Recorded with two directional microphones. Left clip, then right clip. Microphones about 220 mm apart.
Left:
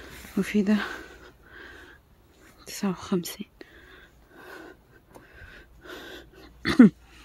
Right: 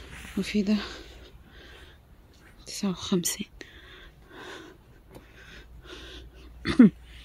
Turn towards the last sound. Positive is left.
turn(degrees=10)  # may be behind; listen again after turning